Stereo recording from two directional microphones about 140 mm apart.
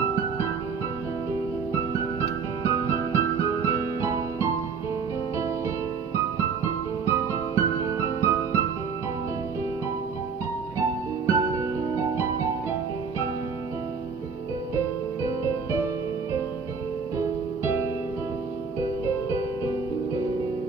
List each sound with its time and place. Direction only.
1.7 s music: 20° right (ahead or behind)
6.1 s music: 20° right (ahead or behind)
11.2 s music: 20° right (ahead or behind)